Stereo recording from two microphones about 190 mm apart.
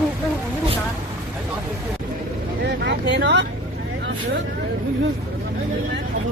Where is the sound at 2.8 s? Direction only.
65° right (ahead or behind).